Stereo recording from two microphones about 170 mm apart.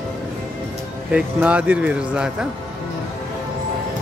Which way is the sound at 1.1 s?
5° right (ahead or behind).